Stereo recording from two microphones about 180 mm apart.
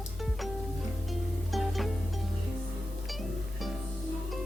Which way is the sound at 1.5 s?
Centre (ahead or behind).